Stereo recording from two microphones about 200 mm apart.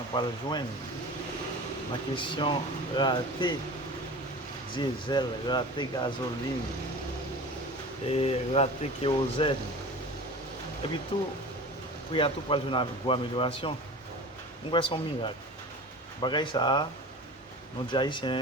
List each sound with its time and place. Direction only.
0.1 s speech: 20° left (ahead or behind)
1.9 s speech: 25° left (ahead or behind)
4.7 s speech: 25° left (ahead or behind)
8.1 s speech: 30° left (ahead or behind)
11.1 s speech: 25° left (ahead or behind)
17.9 s speech: 20° left (ahead or behind)